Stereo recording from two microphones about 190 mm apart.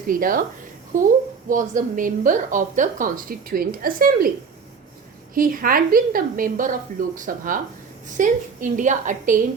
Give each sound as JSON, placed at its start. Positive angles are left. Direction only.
{"t": 0.1, "sound": "a woman's voice", "side_deg": -45}
{"t": 5.3, "sound": "a woman's voice", "side_deg": -45}